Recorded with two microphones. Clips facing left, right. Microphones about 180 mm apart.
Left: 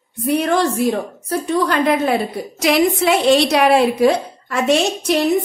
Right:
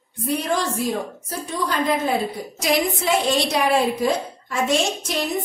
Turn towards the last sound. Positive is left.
turn(degrees=70)  # may be behind; listen again after turning